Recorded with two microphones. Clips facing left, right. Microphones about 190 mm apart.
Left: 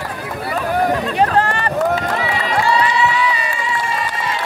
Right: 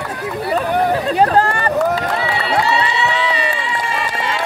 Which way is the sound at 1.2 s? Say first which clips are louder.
Right 3 dB; 35° right (ahead or behind).